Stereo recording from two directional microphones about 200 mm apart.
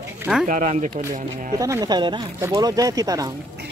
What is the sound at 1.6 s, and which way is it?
Speech, 15° right (ahead or behind).